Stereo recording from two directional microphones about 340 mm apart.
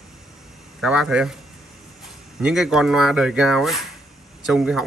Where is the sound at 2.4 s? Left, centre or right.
Centre.